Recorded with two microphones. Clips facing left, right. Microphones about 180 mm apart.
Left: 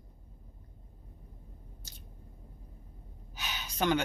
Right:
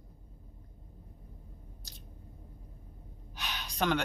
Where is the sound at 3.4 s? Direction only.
5° left (ahead or behind).